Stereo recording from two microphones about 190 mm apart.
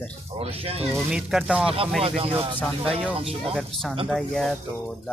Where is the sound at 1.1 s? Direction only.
Centre (ahead or behind).